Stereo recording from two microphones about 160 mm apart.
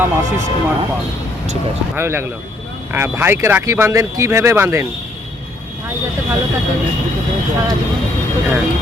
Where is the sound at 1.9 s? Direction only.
15° right (ahead or behind).